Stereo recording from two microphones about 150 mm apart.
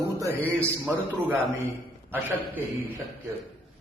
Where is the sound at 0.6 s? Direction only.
10° right (ahead or behind).